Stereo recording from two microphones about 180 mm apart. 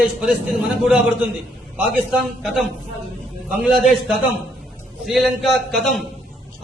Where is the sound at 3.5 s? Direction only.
Centre (ahead or behind).